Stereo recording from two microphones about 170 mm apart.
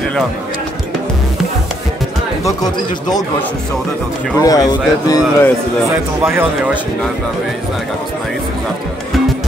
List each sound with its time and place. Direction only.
4.4 s speech: 20° left (ahead or behind)
5.9 s speech: 15° right (ahead or behind)